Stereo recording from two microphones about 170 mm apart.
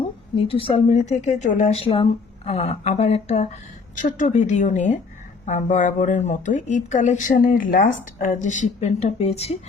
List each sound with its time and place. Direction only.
0.3 s a woman's voice: 35° left (ahead or behind)